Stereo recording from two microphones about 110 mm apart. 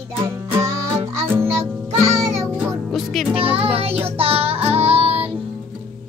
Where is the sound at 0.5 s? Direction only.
25° right (ahead or behind).